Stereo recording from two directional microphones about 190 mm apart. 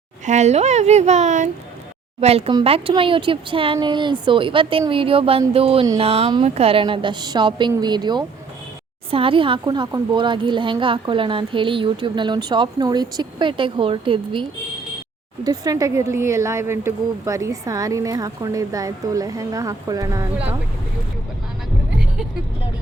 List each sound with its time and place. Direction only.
0.3 s speech: 35° right (ahead or behind)
2.2 s speech: 25° right (ahead or behind)
15.4 s speech: 20° right (ahead or behind)